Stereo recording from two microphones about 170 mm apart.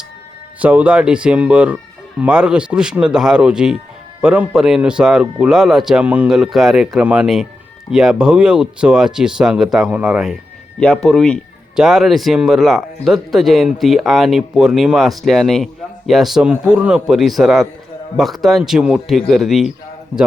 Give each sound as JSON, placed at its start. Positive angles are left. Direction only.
{"t": 0.6, "sound": "speech", "side_deg": -10}